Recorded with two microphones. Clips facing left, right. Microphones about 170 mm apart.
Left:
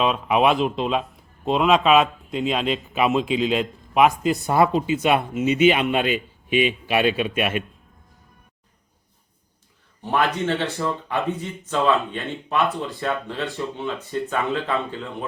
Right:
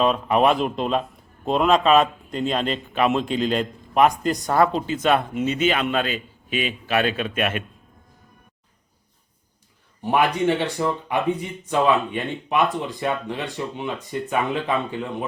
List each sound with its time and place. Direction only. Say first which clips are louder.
0.0 s speech: right 1 dB; 5° left (ahead or behind)
6.5 s speech: left 6 dB; 45° right (ahead or behind)
6.8 s speech: left 2 dB; 10° left (ahead or behind)
10.0 s speech: right 2 dB; 15° right (ahead or behind)